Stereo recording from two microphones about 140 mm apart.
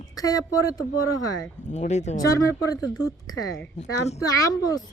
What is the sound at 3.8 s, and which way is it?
Speech, 55° left (ahead or behind).